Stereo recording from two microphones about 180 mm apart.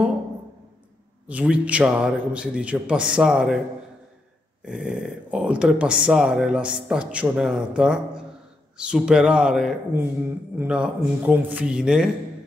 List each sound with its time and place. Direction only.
1.2 s speech: 5° right (ahead or behind)
4.6 s speech: 5° right (ahead or behind)